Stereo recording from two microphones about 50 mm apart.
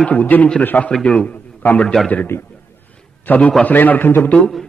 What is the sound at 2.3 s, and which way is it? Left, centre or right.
Speech, left.